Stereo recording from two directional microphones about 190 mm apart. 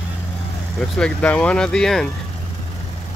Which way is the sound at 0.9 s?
5° left (ahead or behind).